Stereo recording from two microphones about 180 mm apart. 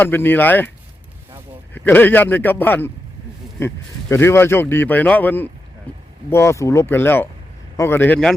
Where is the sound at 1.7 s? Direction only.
10° left (ahead or behind).